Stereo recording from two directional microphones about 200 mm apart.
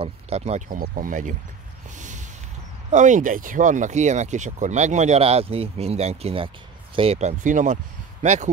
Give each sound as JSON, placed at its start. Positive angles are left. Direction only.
{"t": 0.0, "sound": "speech", "side_deg": -35}
{"t": 2.0, "sound": "a sound", "side_deg": -40}
{"t": 2.9, "sound": "speech", "side_deg": -40}